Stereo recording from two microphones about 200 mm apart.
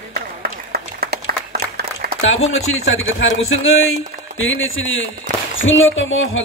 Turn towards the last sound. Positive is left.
turn(degrees=75)  # may be behind; listen again after turning